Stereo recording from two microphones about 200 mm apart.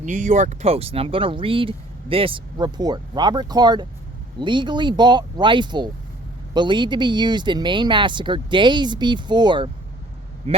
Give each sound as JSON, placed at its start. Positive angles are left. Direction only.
{"t": 0.0, "sound": "speech", "side_deg": -40}